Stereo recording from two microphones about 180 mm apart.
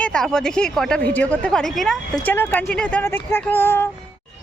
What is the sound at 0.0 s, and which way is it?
A woman's voice, 5° left (ahead or behind).